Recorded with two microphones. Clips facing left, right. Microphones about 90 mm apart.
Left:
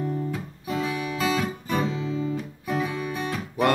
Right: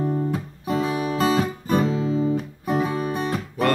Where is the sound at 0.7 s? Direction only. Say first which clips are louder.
Right 5 dB; 40° right (ahead or behind).